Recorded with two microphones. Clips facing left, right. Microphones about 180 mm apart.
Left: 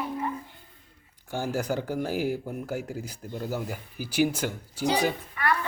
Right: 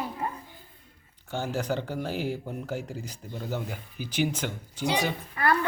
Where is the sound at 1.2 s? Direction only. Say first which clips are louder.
Left 1 dB; 10° left (ahead or behind).